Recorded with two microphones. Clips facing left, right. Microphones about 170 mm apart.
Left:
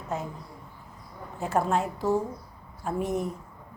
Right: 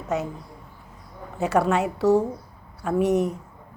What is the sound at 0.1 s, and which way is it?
Speech, 80° right.